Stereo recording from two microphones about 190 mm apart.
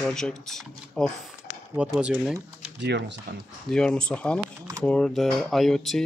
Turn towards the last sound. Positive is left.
turn(degrees=0)  # may be behind; listen again after turning